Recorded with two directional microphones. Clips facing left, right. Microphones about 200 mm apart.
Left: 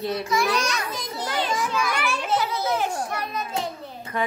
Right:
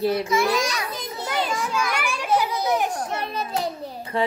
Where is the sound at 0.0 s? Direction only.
25° right (ahead or behind).